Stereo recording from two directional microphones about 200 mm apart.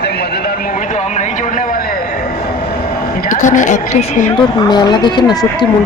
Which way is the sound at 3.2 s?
40° left (ahead or behind).